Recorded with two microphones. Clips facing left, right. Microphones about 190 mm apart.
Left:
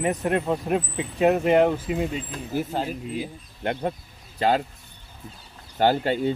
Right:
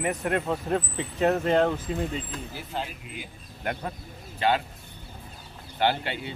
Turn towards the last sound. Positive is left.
turn(degrees=40)  # may be behind; listen again after turning